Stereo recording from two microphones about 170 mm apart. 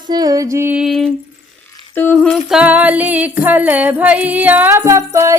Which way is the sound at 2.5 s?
10° right (ahead or behind).